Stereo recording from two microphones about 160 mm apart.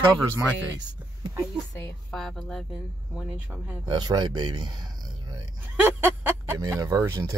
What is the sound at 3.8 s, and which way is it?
Speech, 25° right (ahead or behind).